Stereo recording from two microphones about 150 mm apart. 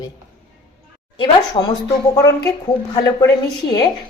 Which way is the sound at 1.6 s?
35° left (ahead or behind).